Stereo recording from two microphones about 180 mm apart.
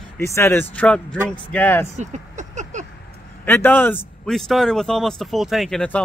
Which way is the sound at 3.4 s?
10° left (ahead or behind).